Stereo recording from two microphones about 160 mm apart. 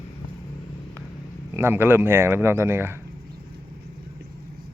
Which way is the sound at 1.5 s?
15° right (ahead or behind).